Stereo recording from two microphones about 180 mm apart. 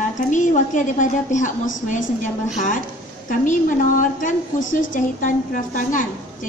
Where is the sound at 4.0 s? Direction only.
45° left (ahead or behind).